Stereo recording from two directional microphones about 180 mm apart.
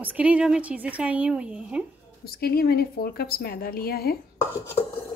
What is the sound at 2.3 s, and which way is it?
A woman's voice, 60° left (ahead or behind).